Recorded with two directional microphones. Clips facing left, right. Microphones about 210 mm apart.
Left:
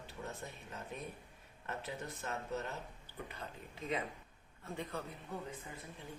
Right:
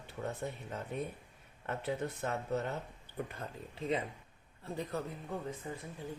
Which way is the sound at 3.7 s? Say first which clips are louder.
Right 4 dB; 30° right (ahead or behind).